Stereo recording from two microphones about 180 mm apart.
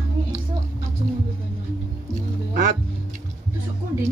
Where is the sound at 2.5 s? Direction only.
45° right (ahead or behind).